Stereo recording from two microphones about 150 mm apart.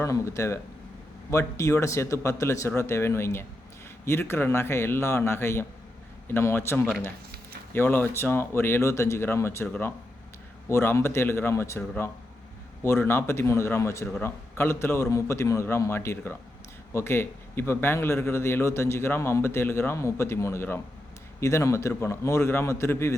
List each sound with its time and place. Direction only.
0.0 s a man's voice: 20° left (ahead or behind)
12.8 s a man's voice: 15° left (ahead or behind)